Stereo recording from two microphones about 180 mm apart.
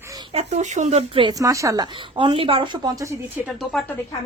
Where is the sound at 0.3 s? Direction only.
40° right (ahead or behind); by 3.2 s 20° right (ahead or behind).